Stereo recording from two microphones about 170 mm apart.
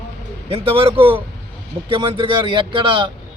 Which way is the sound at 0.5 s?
35° right (ahead or behind).